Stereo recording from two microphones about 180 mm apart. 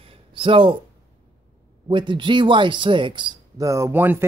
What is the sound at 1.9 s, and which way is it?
Speech, 25° right (ahead or behind).